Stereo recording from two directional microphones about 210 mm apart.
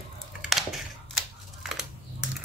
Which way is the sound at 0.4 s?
Centre (ahead or behind).